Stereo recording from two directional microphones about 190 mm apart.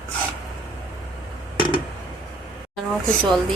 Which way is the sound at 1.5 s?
25° left (ahead or behind).